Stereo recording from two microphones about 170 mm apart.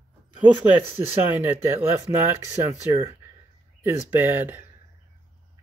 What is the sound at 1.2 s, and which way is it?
Speech, 10° right (ahead or behind).